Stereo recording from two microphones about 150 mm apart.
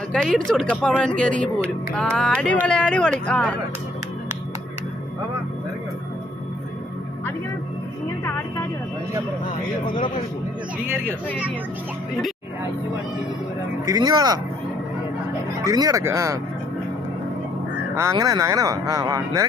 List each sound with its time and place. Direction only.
0.1 s speech: 5° left (ahead or behind)
10.8 s speech: 15° right (ahead or behind)
13.8 s speech: 25° right (ahead or behind)
15.6 s speech: 25° right (ahead or behind)
17.9 s speech: 20° right (ahead or behind)